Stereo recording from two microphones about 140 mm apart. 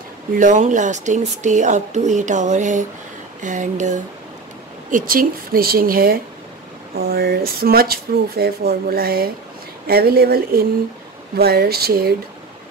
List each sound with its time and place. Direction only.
0.4 s speech: 65° right (ahead or behind)
4.9 s speech: 90° right